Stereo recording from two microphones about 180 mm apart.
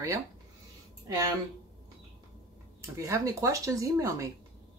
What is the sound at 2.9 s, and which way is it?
Speech, 15° right (ahead or behind).